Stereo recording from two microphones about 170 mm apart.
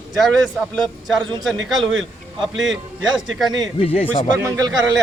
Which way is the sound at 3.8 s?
35° left (ahead or behind).